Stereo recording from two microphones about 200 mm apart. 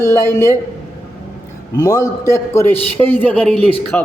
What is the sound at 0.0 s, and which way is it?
Speech, 15° left (ahead or behind).